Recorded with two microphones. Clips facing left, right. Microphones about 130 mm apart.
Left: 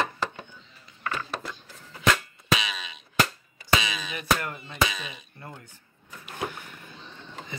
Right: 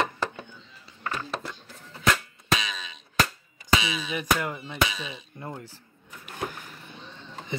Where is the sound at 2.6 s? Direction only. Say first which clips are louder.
Left 1 dB; 35° right (ahead or behind).